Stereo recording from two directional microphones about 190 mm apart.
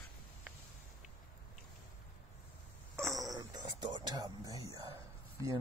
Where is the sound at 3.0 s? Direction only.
15° right (ahead or behind).